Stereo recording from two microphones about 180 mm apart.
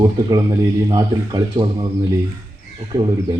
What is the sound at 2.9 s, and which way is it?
Speech, 25° right (ahead or behind).